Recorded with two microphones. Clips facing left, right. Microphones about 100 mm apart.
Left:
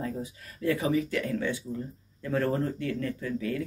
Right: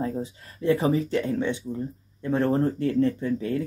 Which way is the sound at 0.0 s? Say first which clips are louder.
Right 5 dB; 30° right (ahead or behind).